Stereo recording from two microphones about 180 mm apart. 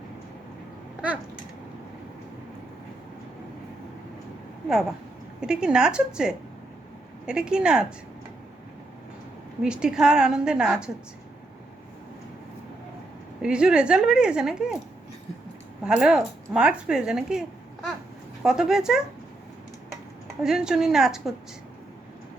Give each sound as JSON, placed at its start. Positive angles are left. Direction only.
{"t": 5.4, "sound": "speech", "side_deg": -5}
{"t": 9.6, "sound": "speech", "side_deg": -5}
{"t": 13.4, "sound": "speech", "side_deg": -5}
{"t": 15.8, "sound": "speech", "side_deg": -5}
{"t": 18.4, "sound": "speech", "side_deg": -5}
{"t": 20.4, "sound": "speech", "side_deg": -5}